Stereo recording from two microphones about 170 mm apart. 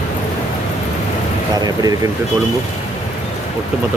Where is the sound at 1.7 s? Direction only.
20° right (ahead or behind).